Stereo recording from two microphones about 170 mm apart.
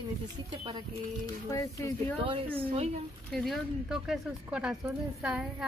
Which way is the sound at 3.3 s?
Centre (ahead or behind).